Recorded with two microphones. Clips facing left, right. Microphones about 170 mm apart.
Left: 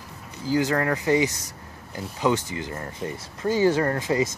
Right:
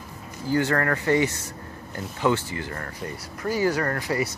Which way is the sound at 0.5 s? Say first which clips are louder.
Even; 10° left (ahead or behind).